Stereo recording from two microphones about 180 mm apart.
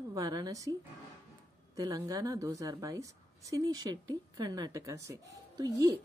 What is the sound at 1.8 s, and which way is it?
A woman's voice, 20° right (ahead or behind).